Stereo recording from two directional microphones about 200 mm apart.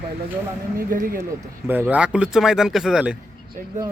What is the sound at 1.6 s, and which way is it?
Speech, 10° right (ahead or behind).